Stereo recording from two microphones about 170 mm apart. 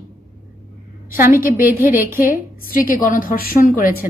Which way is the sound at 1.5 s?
10° right (ahead or behind).